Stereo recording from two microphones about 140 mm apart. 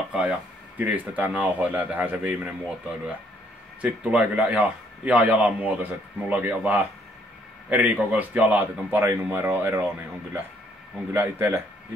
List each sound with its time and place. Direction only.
0.1 s a man's voice: 5° right (ahead or behind)
3.8 s a man's voice: 10° right (ahead or behind)
11.1 s a man's voice: 15° right (ahead or behind)